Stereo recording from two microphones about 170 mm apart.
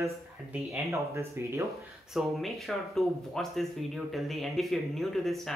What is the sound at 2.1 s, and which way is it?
Speech, centre (ahead or behind).